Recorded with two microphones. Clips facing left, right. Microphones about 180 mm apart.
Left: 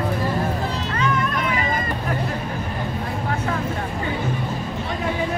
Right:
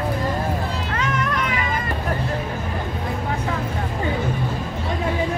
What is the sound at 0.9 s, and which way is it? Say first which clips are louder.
Music: left 2 dB; 90° right.